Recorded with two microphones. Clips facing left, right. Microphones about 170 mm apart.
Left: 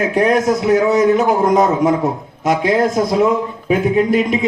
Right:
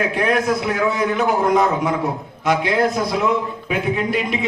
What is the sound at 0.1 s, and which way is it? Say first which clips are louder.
A man's voice: left 5 dB; 45° left (ahead or behind).